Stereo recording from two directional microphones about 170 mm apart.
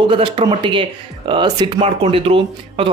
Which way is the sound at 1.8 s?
35° right (ahead or behind).